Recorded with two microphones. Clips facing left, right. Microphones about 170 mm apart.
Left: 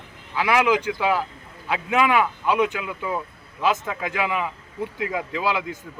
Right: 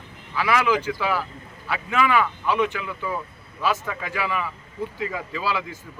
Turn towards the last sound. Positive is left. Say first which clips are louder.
# left 3 dB
turn(degrees=20)  # may be behind; listen again after turning